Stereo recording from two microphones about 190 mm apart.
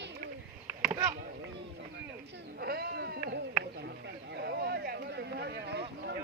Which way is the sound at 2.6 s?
55° right (ahead or behind).